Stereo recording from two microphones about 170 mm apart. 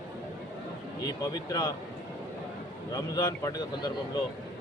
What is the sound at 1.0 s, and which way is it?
Speech, 20° left (ahead or behind).